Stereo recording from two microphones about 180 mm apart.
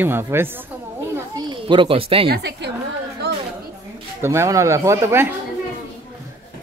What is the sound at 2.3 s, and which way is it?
Speech, 65° right (ahead or behind).